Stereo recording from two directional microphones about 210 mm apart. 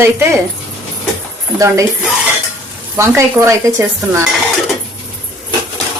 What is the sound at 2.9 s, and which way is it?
Speech, 15° right (ahead or behind).